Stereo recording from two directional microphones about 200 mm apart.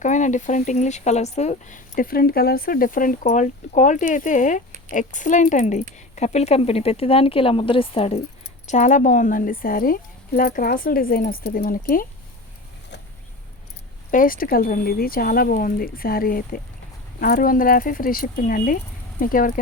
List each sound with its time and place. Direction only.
0.0 s speech: 40° left (ahead or behind)
14.1 s speech: 45° left (ahead or behind)